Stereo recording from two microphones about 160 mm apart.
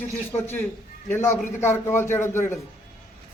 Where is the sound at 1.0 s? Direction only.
15° left (ahead or behind).